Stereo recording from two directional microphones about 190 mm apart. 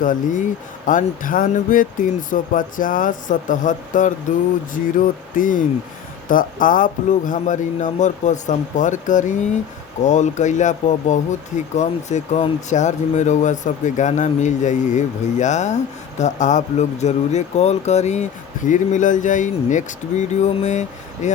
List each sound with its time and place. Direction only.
0.0 s speech: 45° left (ahead or behind)